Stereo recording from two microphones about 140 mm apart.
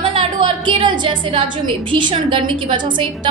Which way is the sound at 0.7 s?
35° right (ahead or behind).